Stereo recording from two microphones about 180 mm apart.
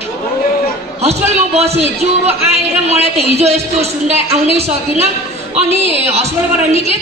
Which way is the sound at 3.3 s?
35° right (ahead or behind).